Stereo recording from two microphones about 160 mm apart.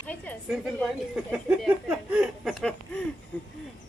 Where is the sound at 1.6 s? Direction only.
10° right (ahead or behind).